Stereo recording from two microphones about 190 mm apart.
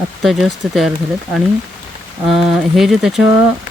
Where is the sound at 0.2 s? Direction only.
Centre (ahead or behind).